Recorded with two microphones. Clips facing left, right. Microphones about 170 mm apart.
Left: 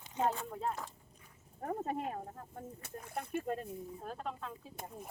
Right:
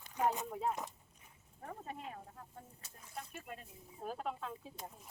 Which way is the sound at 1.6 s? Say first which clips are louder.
Left 10 dB; 45° left (ahead or behind).